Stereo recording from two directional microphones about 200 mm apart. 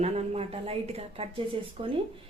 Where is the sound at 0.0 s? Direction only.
30° right (ahead or behind).